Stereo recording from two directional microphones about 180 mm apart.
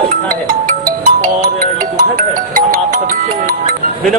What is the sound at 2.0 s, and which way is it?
Speech, 50° right (ahead or behind).